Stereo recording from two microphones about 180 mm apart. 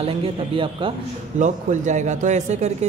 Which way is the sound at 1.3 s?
40° right (ahead or behind).